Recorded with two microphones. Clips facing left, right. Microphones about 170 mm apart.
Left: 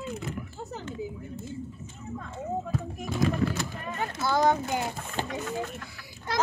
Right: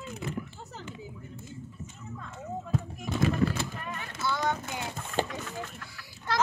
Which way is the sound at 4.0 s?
40° left (ahead or behind).